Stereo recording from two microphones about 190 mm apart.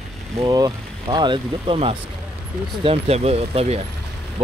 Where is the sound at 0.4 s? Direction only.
20° right (ahead or behind).